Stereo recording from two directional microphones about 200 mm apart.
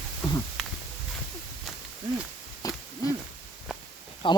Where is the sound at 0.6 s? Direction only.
Centre (ahead or behind).